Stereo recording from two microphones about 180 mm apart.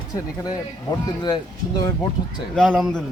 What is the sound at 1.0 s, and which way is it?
Speech, 20° left (ahead or behind).